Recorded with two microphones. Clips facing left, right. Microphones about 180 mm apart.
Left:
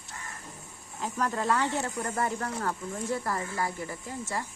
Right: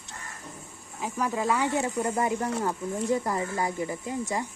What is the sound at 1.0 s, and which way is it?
Speech, 10° right (ahead or behind).